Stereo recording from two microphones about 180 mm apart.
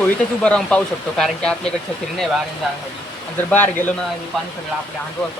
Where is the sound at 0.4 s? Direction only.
5° left (ahead or behind).